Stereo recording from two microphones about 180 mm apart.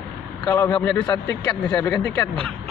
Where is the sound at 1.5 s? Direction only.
5° left (ahead or behind).